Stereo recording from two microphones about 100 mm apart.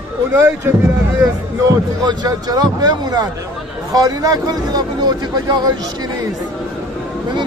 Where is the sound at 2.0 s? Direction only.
45° right (ahead or behind).